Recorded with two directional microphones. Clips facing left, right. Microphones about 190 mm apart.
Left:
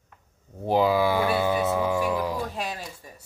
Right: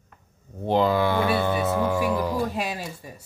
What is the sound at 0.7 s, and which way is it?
Speech, 5° left (ahead or behind).